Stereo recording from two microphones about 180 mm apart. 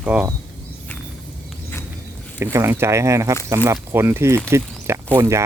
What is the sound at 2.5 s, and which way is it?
Speech, 15° right (ahead or behind).